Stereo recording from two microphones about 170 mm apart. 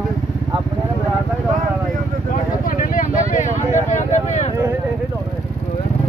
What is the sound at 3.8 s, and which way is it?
Vehicle, 45° left (ahead or behind).